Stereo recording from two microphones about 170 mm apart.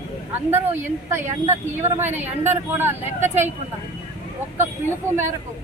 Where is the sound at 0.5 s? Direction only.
15° right (ahead or behind).